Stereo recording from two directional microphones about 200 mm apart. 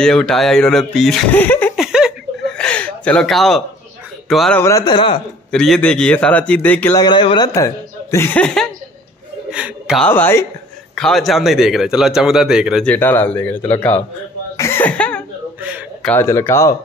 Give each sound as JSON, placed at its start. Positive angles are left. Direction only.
{"t": 0.0, "sound": "a man's voice", "side_deg": 5}
{"t": 1.9, "sound": "a sound", "side_deg": 0}
{"t": 4.3, "sound": "a man's voice", "side_deg": 5}
{"t": 4.6, "sound": "a man's voice", "side_deg": 20}
{"t": 5.5, "sound": "speech", "side_deg": 5}
{"t": 7.0, "sound": "a man's voice", "side_deg": 25}
{"t": 14.6, "sound": "cough", "side_deg": 10}
{"t": 15.6, "sound": "a sound", "side_deg": -5}
{"t": 16.1, "sound": "speech", "side_deg": 15}